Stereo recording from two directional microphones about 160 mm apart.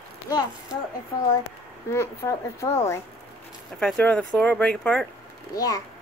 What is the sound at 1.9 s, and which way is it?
Speech, 20° left (ahead or behind).